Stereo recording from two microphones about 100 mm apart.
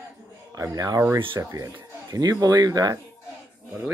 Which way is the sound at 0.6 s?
35° right (ahead or behind).